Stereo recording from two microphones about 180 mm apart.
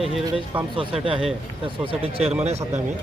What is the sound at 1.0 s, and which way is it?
Speech, 30° right (ahead or behind).